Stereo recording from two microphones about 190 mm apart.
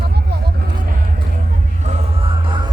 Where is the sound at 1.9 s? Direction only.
30° right (ahead or behind).